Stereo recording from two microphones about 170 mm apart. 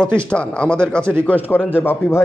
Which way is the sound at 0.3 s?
5° left (ahead or behind).